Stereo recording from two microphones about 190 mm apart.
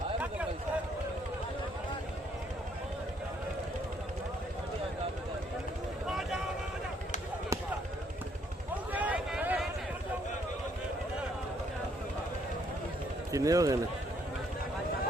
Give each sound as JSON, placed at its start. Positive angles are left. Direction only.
{"t": 6.1, "sound": "vehicle", "side_deg": 0}
{"t": 8.9, "sound": "a sound", "side_deg": -10}
{"t": 13.3, "sound": "speech", "side_deg": -15}